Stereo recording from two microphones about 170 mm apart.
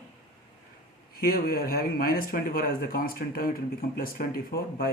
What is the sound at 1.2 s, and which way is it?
Speech, 60° left (ahead or behind).